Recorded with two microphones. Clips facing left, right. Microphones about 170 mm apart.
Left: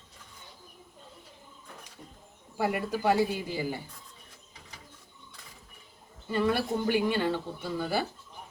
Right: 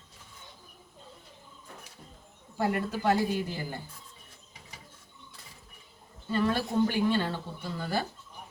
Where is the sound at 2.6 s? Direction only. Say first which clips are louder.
Even; 10° left (ahead or behind).